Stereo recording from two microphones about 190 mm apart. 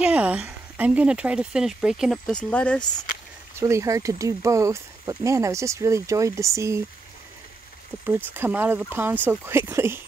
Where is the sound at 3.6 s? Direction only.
15° right (ahead or behind).